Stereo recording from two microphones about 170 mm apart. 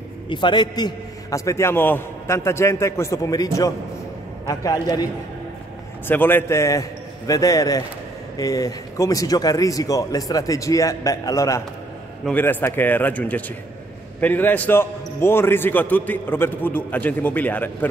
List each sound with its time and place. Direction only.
0.3 s a man's voice: 30° left (ahead or behind)
4.5 s speech: 20° left (ahead or behind)
6.0 s a man's voice: 10° left (ahead or behind)